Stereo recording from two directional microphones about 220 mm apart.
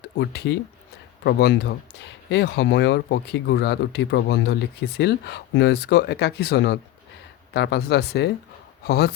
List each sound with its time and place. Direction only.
0.2 s speech: 50° left (ahead or behind)